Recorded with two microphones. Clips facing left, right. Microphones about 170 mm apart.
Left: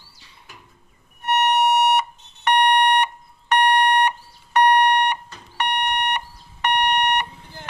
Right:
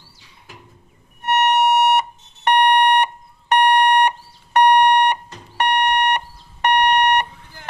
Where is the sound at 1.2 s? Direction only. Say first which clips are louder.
Right 2 dB; 60° right (ahead or behind).